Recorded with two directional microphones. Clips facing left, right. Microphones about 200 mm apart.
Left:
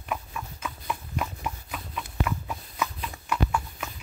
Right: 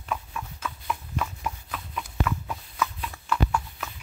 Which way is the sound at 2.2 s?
10° left (ahead or behind).